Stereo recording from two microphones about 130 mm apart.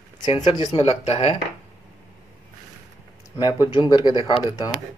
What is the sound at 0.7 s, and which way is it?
Speech, 50° left (ahead or behind).